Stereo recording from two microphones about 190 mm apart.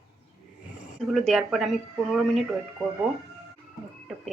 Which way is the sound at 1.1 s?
Centre (ahead or behind).